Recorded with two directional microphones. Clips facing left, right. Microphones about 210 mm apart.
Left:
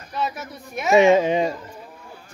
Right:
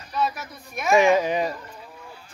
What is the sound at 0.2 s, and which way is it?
Speech, 25° left (ahead or behind).